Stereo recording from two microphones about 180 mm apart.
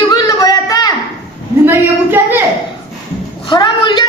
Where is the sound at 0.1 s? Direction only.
20° left (ahead or behind).